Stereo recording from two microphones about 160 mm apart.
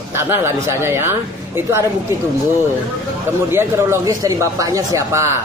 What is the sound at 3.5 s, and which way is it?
Speech, 15° right (ahead or behind).